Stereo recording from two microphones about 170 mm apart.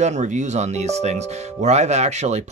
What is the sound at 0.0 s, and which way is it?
Speech, 45° right (ahead or behind).